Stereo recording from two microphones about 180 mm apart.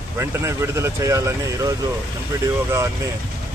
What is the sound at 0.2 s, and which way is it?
Speech, 15° right (ahead or behind).